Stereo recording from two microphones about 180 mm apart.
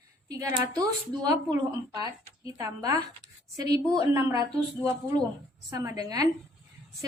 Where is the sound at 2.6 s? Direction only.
20° right (ahead or behind).